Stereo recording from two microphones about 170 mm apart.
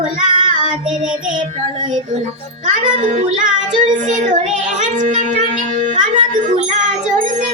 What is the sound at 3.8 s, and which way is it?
Child singing, 45° right (ahead or behind).